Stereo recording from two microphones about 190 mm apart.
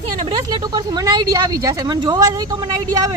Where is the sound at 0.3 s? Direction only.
20° right (ahead or behind).